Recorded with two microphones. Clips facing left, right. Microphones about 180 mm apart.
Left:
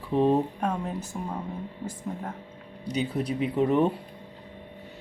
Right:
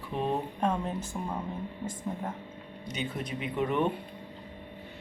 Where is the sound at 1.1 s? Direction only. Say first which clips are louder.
Left 1 dB; 5° left (ahead or behind).